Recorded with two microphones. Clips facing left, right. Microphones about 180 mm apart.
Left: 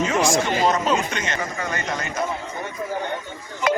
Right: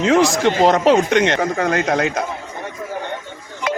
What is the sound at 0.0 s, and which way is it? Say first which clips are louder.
Speech: right 6 dB; 75° right (ahead or behind).